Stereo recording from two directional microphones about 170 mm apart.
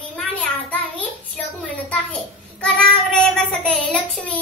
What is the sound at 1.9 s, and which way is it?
Child singing, 5° left (ahead or behind).